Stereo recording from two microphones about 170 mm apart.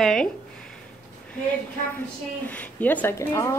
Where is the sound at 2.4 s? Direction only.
10° left (ahead or behind).